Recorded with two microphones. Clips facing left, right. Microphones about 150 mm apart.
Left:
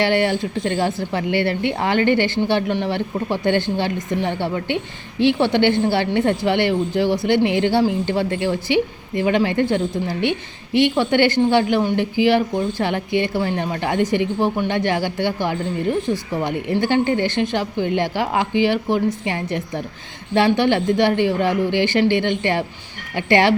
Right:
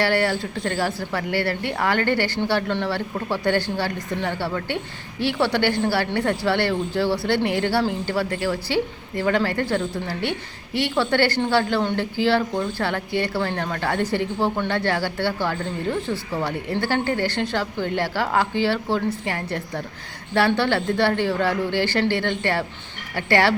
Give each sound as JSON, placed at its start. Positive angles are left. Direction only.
{"t": 0.0, "sound": "a woman's voice", "side_deg": 20}